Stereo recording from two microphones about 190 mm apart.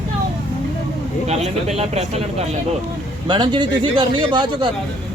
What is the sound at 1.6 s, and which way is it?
Speech, 35° right (ahead or behind).